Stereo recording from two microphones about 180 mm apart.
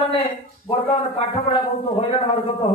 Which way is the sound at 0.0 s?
30° left (ahead or behind).